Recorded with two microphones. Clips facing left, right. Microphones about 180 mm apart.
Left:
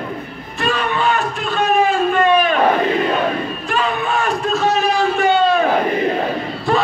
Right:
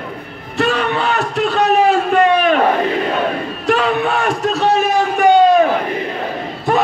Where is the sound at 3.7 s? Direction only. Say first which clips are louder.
Right 5 dB; 70° right (ahead or behind).